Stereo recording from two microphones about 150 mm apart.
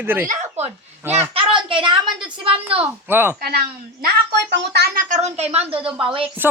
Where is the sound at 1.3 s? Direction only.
35° right (ahead or behind).